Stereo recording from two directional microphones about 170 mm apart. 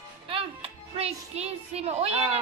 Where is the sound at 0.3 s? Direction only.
35° right (ahead or behind).